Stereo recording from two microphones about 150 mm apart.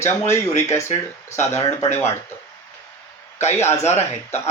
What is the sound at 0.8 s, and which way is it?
Speech, 50° left (ahead or behind).